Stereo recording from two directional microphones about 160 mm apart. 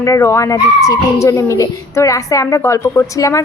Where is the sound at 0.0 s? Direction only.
20° left (ahead or behind).